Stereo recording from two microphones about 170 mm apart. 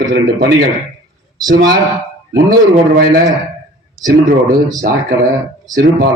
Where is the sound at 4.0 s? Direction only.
Centre (ahead or behind).